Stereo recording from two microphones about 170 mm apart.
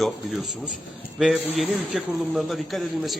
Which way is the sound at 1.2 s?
Centre (ahead or behind).